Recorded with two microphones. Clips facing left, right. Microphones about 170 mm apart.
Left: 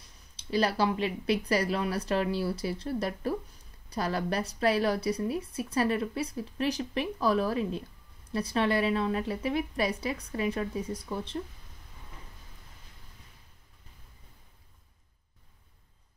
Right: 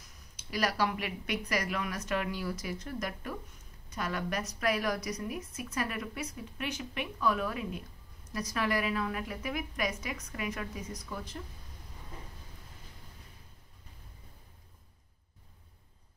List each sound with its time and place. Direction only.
0.0 s speech: 30° left (ahead or behind)